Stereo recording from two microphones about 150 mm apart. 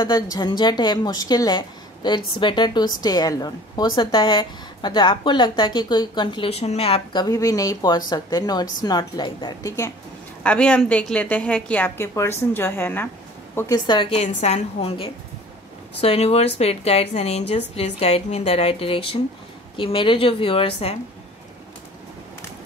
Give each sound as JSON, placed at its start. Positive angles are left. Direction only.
{"t": 0.0, "sound": "a woman's voice", "side_deg": 30}
{"t": 10.4, "sound": "a woman's voice", "side_deg": 10}
{"t": 13.8, "sound": "a woman's voice", "side_deg": 30}
{"t": 14.1, "sound": "a woman's voice", "side_deg": 45}